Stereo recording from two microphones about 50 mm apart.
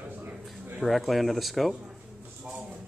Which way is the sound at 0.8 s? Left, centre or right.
Centre.